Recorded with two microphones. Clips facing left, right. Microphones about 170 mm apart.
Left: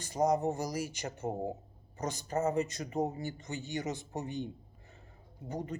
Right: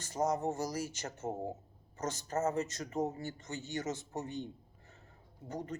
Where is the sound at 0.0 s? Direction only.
15° left (ahead or behind).